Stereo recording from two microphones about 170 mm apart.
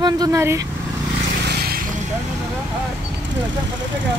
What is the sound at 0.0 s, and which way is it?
Vehicle, 20° right (ahead or behind).